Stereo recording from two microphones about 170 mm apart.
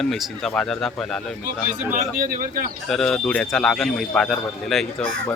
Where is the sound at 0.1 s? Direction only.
5° left (ahead or behind).